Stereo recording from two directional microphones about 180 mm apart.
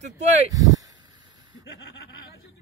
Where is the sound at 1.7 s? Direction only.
65° left (ahead or behind).